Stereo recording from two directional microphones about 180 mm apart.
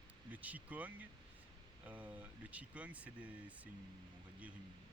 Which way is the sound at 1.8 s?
10° right (ahead or behind).